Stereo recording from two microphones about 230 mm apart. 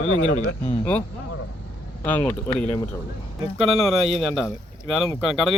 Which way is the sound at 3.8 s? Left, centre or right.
Centre.